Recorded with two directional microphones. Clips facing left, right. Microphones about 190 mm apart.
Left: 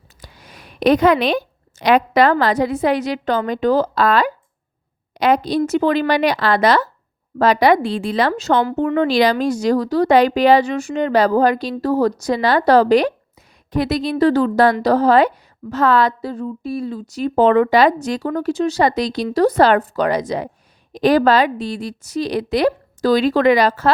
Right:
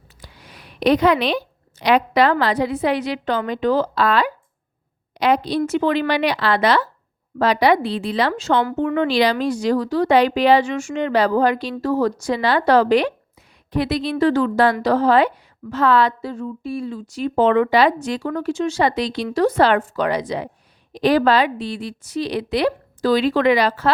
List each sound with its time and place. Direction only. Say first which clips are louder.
0.2 s a woman's voice: left 2 dB; 45° left (ahead or behind)